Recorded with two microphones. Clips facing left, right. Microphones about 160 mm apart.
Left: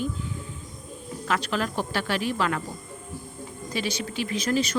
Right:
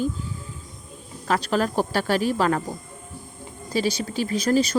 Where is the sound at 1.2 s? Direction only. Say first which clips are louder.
Right 5 dB; 35° right (ahead or behind).